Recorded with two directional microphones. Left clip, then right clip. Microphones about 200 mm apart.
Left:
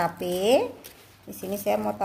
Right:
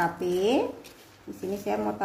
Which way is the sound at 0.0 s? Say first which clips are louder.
Even; 40° left (ahead or behind).